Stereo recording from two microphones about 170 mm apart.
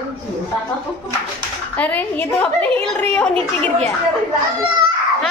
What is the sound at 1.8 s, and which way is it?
A child's voice, 10° left (ahead or behind).